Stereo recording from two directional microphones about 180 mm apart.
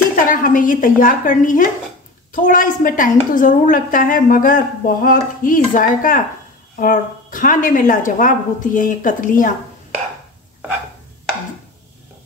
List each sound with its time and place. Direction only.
0.1 s a woman's voice: 45° left (ahead or behind)